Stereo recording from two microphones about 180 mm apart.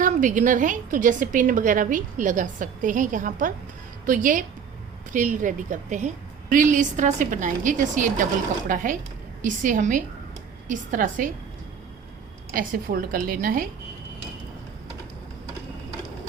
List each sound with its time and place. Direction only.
0.0 s a woman's voice: 45° right (ahead or behind)
12.5 s a woman's voice: 50° right (ahead or behind)